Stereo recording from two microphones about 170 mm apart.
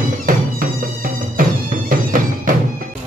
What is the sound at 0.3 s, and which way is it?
Music, 55° right (ahead or behind).